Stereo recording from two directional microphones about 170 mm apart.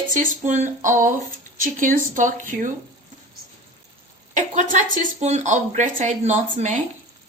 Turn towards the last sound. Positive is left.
turn(degrees=-40)  # may be behind; listen again after turning